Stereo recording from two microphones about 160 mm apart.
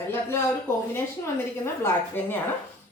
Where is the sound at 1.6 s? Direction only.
15° left (ahead or behind).